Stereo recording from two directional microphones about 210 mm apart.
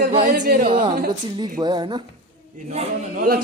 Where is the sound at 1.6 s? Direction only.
20° right (ahead or behind).